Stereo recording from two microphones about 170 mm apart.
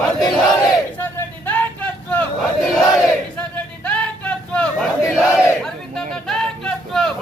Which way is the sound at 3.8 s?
5° left (ahead or behind).